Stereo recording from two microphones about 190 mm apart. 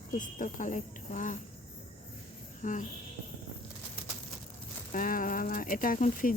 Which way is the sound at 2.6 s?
40° left (ahead or behind).